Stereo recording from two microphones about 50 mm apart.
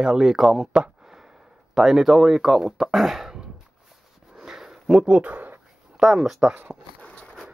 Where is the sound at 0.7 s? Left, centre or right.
Centre.